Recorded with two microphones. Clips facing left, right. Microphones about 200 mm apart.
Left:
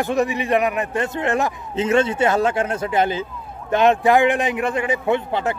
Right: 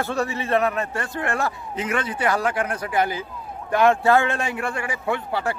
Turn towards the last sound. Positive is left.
turn(degrees=20)  # may be behind; listen again after turning